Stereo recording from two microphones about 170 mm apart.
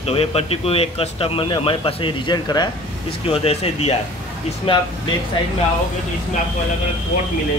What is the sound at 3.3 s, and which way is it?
Speech, 35° left (ahead or behind).